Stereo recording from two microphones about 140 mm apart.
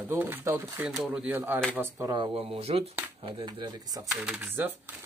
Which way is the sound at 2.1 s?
40° right (ahead or behind).